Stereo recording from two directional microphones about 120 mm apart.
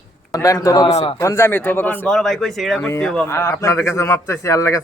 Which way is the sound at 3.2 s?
20° left (ahead or behind).